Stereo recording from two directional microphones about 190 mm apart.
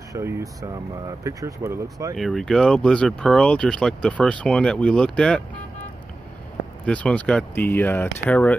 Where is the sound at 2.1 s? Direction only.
Centre (ahead or behind).